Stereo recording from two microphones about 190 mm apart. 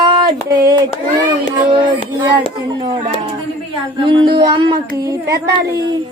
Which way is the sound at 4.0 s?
25° right (ahead or behind).